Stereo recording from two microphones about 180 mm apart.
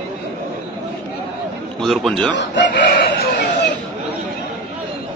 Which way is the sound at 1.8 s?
Centre (ahead or behind).